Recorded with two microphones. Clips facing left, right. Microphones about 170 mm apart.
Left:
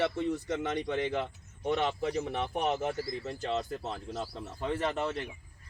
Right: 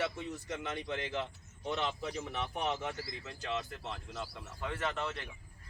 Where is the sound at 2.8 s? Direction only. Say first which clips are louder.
Left 7 dB; 35° left (ahead or behind).